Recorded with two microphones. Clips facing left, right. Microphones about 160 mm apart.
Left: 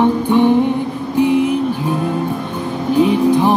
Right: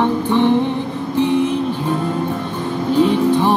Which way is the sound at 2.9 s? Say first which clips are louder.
Left 2 dB; 10° left (ahead or behind).